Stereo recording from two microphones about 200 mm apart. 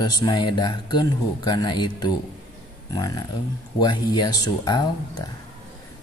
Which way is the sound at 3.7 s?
20° left (ahead or behind).